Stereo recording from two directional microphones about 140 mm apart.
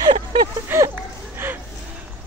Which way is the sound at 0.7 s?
15° right (ahead or behind).